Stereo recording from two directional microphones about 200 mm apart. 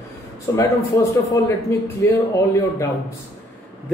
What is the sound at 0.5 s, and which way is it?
A man's voice, 15° left (ahead or behind).